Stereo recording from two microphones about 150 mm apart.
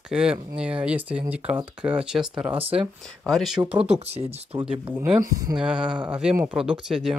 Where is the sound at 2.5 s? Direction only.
40° right (ahead or behind).